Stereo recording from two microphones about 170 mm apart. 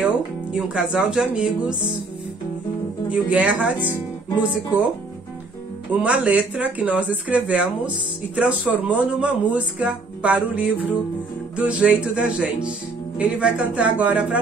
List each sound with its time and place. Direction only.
0.0 s speech: 5° right (ahead or behind)
3.1 s speech: 5° right (ahead or behind)
5.9 s speech: 5° right (ahead or behind)